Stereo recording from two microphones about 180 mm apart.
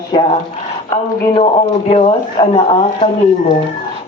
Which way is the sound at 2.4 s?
30° left (ahead or behind).